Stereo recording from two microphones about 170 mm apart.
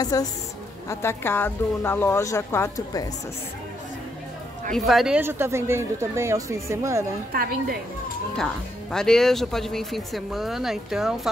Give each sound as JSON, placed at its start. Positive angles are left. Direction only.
{"t": 0.0, "sound": "a woman's voice", "side_deg": 20}
{"t": 4.7, "sound": "speech", "side_deg": 0}
{"t": 5.2, "sound": "speech", "side_deg": -15}
{"t": 7.3, "sound": "a woman's voice", "side_deg": -60}
{"t": 8.9, "sound": "speech", "side_deg": 5}